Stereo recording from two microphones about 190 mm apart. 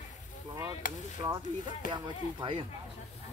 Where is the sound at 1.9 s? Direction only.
25° right (ahead or behind).